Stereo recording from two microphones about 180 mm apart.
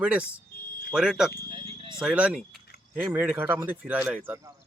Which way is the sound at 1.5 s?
25° right (ahead or behind).